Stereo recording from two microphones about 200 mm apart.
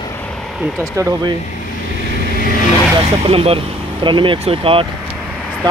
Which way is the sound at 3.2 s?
30° right (ahead or behind).